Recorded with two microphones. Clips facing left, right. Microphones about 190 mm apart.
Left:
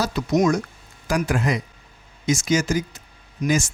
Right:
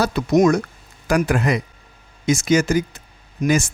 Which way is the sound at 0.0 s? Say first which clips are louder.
Right 4 dB; 60° right (ahead or behind).